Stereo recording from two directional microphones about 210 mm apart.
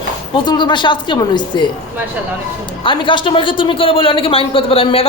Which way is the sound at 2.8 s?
25° left (ahead or behind).